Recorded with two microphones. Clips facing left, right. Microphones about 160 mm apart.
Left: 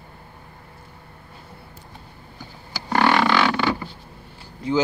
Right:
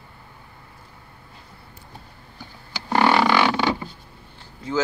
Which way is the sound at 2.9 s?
10° right (ahead or behind).